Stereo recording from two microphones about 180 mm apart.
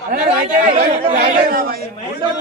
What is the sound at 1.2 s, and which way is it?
Speech, 55° right (ahead or behind).